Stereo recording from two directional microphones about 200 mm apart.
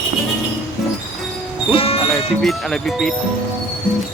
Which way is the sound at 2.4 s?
Centre (ahead or behind).